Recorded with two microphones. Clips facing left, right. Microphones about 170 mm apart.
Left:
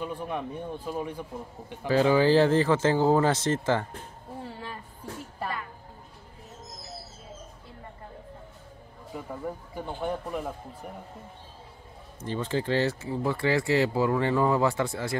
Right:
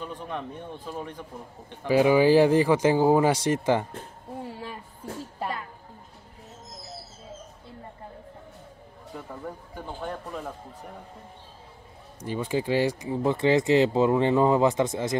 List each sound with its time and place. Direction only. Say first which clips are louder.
0.0 s speech: left 2 dB; 10° left (ahead or behind)
1.9 s speech: right 2 dB; 15° right (ahead or behind)
9.1 s speech: left 2 dB; 10° left (ahead or behind)
12.2 s speech: right 2 dB; 10° right (ahead or behind)